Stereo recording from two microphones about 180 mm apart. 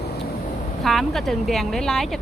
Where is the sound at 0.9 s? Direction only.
Centre (ahead or behind).